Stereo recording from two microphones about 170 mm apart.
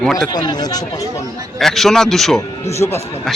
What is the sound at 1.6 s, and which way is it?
Speech, centre (ahead or behind).